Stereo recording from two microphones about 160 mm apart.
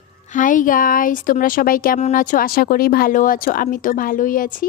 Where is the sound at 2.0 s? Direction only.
50° left (ahead or behind).